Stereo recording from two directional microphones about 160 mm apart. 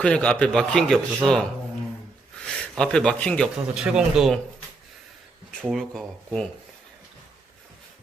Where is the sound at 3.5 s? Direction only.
5° right (ahead or behind).